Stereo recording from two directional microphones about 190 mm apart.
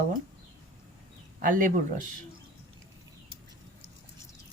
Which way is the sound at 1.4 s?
45° right (ahead or behind).